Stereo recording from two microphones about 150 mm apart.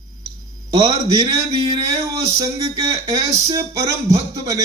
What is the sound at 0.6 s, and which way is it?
Speech, 20° right (ahead or behind).